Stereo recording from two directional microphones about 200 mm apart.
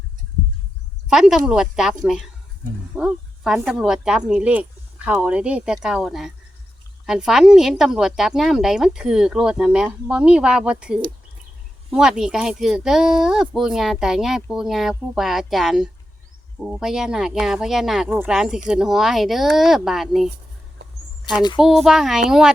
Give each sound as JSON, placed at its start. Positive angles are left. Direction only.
{"t": 1.0, "sound": "speech", "side_deg": 0}
{"t": 21.3, "sound": "a sound", "side_deg": 20}
{"t": 21.6, "sound": "speech", "side_deg": 0}